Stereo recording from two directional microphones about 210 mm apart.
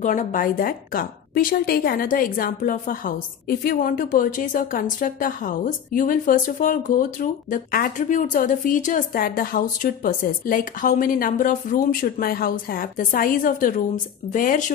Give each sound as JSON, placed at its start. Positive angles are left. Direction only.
{"t": 0.0, "sound": "a woman's voice", "side_deg": 35}